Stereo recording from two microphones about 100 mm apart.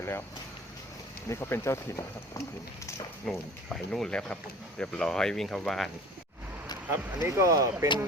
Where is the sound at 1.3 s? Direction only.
25° left (ahead or behind).